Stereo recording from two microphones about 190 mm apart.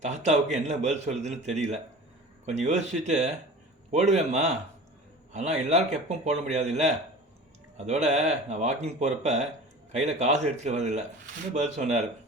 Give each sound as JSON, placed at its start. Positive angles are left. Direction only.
{"t": 0.0, "sound": "a man's voice", "side_deg": -40}